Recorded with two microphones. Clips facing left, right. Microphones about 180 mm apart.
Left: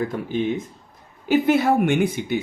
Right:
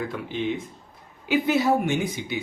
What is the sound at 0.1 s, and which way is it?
Speech, 45° left (ahead or behind).